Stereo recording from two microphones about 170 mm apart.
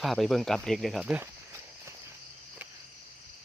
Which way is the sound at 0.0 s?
Centre (ahead or behind).